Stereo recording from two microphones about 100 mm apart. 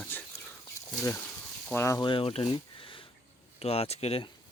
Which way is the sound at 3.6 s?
90° left.